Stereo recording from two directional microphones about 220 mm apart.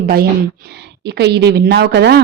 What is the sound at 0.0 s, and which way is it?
A woman's voice, 45° right (ahead or behind).